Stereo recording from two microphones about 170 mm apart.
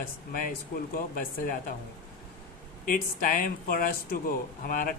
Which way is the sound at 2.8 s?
55° left (ahead or behind).